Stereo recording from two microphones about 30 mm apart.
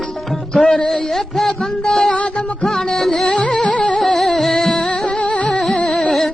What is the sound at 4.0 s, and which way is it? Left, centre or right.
Music, centre.